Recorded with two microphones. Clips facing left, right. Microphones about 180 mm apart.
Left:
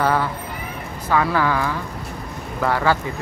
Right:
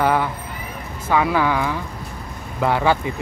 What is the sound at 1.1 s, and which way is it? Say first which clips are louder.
Speech: right 1 dB; 15° right (ahead or behind).